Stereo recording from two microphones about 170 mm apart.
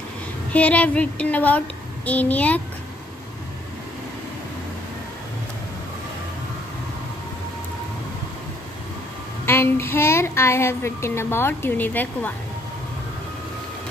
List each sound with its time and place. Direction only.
0.5 s speech: 10° left (ahead or behind)
9.5 s a child's voice: 15° left (ahead or behind)